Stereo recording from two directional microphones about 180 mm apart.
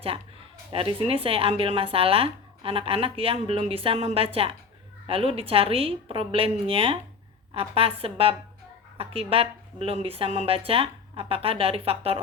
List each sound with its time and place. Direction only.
0.7 s speech: 30° right (ahead or behind)